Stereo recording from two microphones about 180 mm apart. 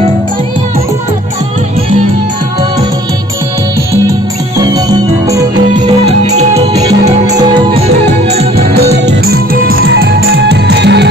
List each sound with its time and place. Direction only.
4.6 s music: 20° right (ahead or behind)
6.0 s music: 40° right (ahead or behind)
6.7 s music: 20° right (ahead or behind)
7.8 s music: 35° right (ahead or behind)
8.5 s music: 65° right (ahead or behind)